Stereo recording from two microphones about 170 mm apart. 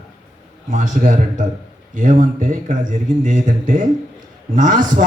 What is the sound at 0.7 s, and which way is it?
A man's voice, 45° right (ahead or behind).